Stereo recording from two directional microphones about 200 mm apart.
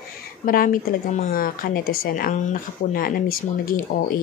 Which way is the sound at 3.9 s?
45° left (ahead or behind).